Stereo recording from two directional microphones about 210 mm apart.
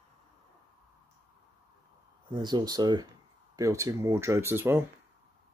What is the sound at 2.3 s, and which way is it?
Speech, 20° right (ahead or behind).